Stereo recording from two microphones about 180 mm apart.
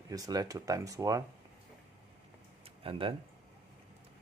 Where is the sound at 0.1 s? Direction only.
20° right (ahead or behind).